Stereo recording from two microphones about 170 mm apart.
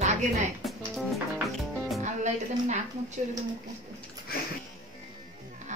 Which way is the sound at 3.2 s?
40° right (ahead or behind).